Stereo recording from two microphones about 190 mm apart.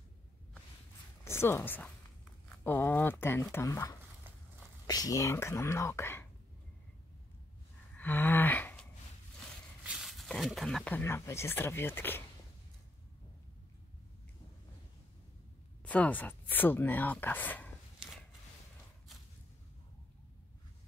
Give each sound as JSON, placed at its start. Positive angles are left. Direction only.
{"t": 1.2, "sound": "a woman's voice", "side_deg": 15}
{"t": 8.0, "sound": "a sound", "side_deg": 10}
{"t": 9.8, "sound": "speech", "side_deg": 0}
{"t": 15.8, "sound": "speech", "side_deg": 5}